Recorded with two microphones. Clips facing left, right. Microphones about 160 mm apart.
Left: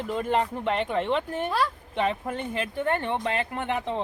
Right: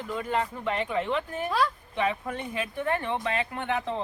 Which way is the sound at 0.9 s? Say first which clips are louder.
Left 2 dB; 30° left (ahead or behind).